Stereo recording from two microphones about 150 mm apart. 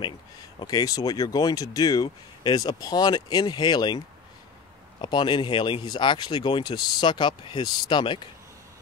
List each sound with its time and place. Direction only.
0.6 s speech: 25° left (ahead or behind)
5.0 s speech: 30° left (ahead or behind)